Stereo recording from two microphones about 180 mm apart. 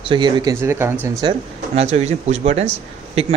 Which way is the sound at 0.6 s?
15° right (ahead or behind).